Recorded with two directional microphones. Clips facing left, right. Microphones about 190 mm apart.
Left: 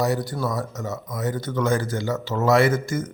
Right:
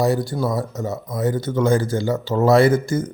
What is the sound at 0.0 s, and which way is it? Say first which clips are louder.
Speech: right 4 dB; 30° right (ahead or behind).